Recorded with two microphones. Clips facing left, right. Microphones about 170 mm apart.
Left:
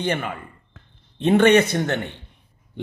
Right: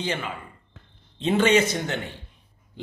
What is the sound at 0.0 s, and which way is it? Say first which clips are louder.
Speech: left 4 dB; 55° left (ahead or behind).